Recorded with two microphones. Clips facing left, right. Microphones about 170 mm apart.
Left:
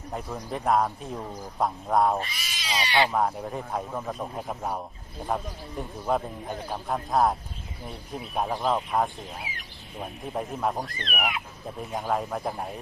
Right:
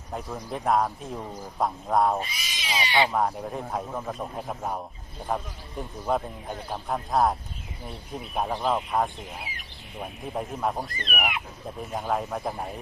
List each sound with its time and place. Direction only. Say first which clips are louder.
0.1 s speech: even; centre (ahead or behind); by 3.1 s 20° right (ahead or behind)
3.1 s speech: even; centre (ahead or behind)
8.4 s speech: even; centre (ahead or behind)